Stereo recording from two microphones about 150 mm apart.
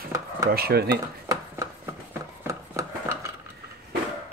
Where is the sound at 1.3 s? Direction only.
20° right (ahead or behind).